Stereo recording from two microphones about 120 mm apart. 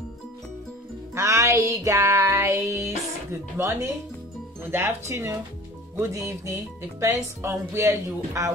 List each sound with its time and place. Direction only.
1.1 s music: 25° right (ahead or behind)
4.6 s speech: 20° right (ahead or behind)